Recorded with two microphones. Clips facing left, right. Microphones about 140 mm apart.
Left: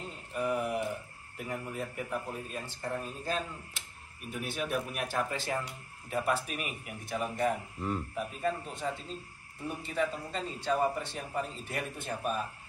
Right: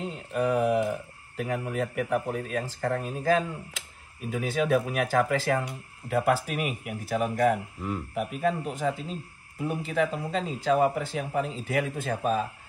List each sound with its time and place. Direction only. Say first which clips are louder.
0.0 s a sound: right 7 dB; 90° right
1.3 s speech: right 8 dB; 90° right
8.1 s speech: right 6 dB; 80° right